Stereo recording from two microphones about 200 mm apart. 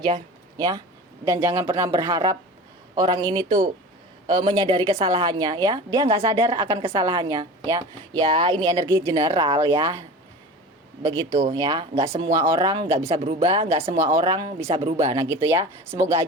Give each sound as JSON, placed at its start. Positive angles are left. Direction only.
{"t": 0.0, "sound": "a woman's voice", "side_deg": -20}
{"t": 11.0, "sound": "a woman's voice", "side_deg": -20}
{"t": 12.3, "sound": "a woman's voice", "side_deg": -15}
{"t": 15.4, "sound": "a woman's voice", "side_deg": -15}